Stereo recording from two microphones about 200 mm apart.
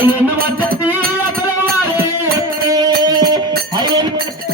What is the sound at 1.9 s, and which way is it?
Music, 15° right (ahead or behind).